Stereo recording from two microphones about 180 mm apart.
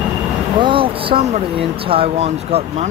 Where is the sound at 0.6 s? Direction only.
30° right (ahead or behind).